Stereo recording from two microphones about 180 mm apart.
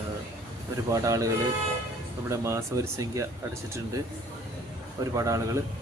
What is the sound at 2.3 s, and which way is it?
Speech, 15° right (ahead or behind).